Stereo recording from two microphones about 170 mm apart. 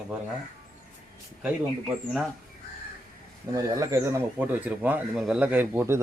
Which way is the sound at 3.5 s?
20° right (ahead or behind).